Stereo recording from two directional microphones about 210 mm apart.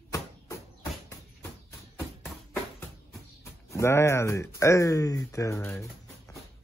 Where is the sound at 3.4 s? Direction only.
15° left (ahead or behind).